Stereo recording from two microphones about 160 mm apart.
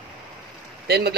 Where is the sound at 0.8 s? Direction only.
85° right.